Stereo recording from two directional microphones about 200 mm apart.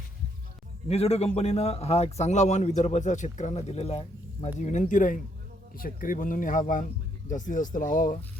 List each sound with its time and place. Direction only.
0.9 s a man's voice: 30° left (ahead or behind)
4.7 s a man's voice: 40° left (ahead or behind)